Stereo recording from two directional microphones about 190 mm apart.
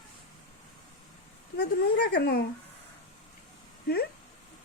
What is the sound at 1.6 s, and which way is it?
Speech, 60° left (ahead or behind).